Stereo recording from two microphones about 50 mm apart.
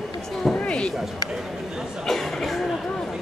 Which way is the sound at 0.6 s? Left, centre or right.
Left.